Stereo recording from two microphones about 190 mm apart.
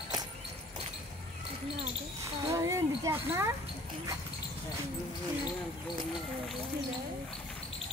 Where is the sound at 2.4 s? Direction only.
15° right (ahead or behind).